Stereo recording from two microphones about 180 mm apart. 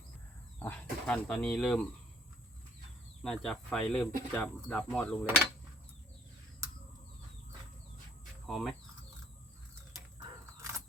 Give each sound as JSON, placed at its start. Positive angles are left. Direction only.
{"t": 0.6, "sound": "speech", "side_deg": 10}
{"t": 3.2, "sound": "speech", "side_deg": 5}
{"t": 8.4, "sound": "speech", "side_deg": 0}
{"t": 10.6, "sound": "a sound", "side_deg": -15}